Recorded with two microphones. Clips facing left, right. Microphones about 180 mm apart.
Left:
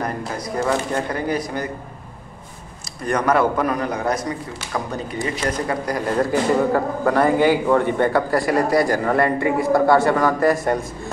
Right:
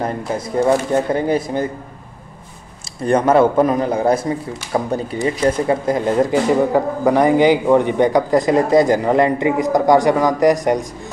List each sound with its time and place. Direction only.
0.0 s a man's voice: 25° right (ahead or behind)
3.0 s a man's voice: 25° right (ahead or behind)